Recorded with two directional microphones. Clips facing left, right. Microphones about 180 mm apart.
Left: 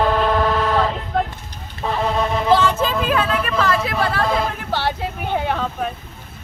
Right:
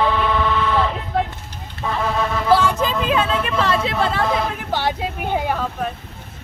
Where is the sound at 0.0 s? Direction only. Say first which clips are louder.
Left 2 dB; 40° left (ahead or behind).